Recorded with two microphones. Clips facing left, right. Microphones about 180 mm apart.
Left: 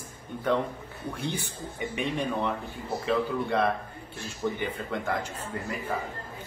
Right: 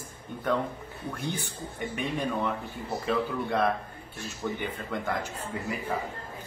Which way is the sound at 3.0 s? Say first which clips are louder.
Left 2 dB; centre (ahead or behind).